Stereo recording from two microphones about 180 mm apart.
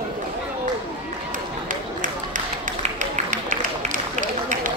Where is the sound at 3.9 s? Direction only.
45° right (ahead or behind).